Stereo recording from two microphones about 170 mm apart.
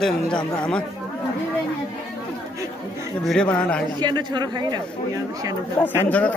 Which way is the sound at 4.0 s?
25° right (ahead or behind).